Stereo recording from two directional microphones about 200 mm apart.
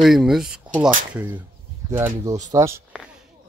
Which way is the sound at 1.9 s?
15° right (ahead or behind).